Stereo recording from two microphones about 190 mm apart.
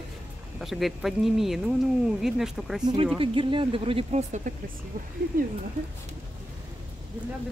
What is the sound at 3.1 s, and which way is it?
Speech, 25° right (ahead or behind).